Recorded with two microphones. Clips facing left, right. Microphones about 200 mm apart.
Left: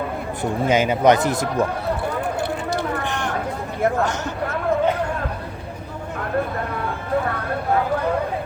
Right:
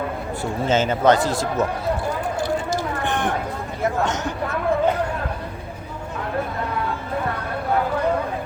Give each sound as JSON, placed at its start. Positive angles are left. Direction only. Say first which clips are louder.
{"t": 0.7, "sound": "speech", "louder": "left 1 dB", "side_deg": 15}
{"t": 4.0, "sound": "speech", "louder": "even", "side_deg": -20}